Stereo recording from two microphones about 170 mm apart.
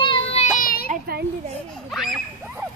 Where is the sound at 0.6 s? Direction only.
60° left (ahead or behind).